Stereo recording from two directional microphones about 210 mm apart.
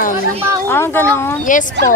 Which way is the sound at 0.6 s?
10° left (ahead or behind).